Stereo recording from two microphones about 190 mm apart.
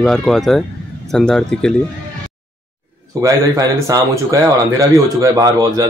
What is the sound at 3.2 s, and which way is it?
A man's voice, 15° right (ahead or behind).